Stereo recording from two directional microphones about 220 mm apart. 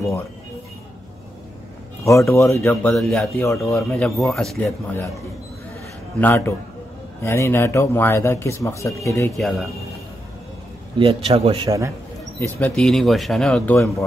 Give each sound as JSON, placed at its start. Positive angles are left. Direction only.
{"t": 2.0, "sound": "speech", "side_deg": 15}
{"t": 6.2, "sound": "speech", "side_deg": 10}
{"t": 9.4, "sound": "speech", "side_deg": 0}
{"t": 11.0, "sound": "speech", "side_deg": -25}
{"t": 12.4, "sound": "speech", "side_deg": 10}
{"t": 13.7, "sound": "speech", "side_deg": 15}